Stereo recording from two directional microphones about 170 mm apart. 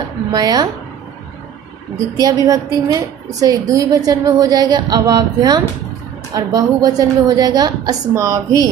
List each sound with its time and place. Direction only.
0.3 s a woman's voice: 20° right (ahead or behind)
2.0 s a woman's voice: 20° right (ahead or behind)